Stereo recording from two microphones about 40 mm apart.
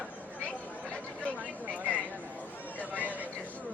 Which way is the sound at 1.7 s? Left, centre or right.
Left.